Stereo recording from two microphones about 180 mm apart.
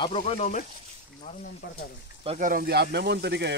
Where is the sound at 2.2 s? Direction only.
35° right (ahead or behind).